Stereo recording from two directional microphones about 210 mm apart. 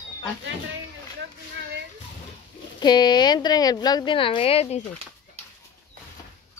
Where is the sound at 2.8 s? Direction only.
20° left (ahead or behind).